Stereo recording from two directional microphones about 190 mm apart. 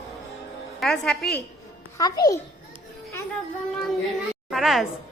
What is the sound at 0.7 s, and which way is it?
Music, centre (ahead or behind).